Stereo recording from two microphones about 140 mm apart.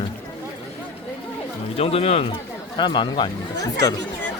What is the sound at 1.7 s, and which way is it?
Speech, 45° left (ahead or behind).